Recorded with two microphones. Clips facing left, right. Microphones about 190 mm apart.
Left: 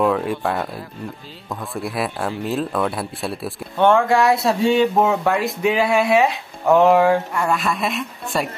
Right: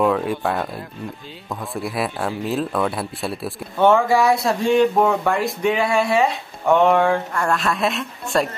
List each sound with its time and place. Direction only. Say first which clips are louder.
0.0 s speech: even; centre (ahead or behind)